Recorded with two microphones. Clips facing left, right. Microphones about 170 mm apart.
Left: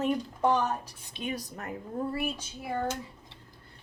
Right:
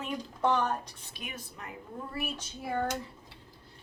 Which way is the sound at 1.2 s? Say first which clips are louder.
Left 9 dB; 35° left (ahead or behind).